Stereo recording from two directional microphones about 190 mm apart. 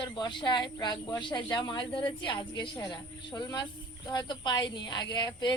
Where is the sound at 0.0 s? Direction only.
25° left (ahead or behind).